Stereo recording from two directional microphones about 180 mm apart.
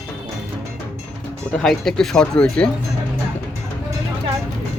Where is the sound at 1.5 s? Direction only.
Centre (ahead or behind).